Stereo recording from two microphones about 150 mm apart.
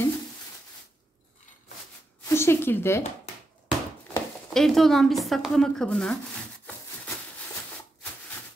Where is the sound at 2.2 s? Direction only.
15° left (ahead or behind).